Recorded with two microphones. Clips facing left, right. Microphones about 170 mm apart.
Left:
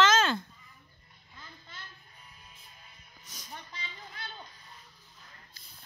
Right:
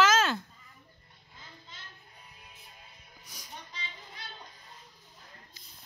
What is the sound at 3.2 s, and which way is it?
Music, 10° right (ahead or behind).